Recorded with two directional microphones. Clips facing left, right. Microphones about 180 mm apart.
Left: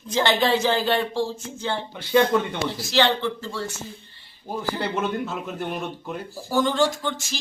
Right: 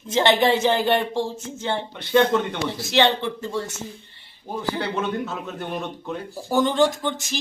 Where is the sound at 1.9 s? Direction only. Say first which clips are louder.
Even; 5° left (ahead or behind).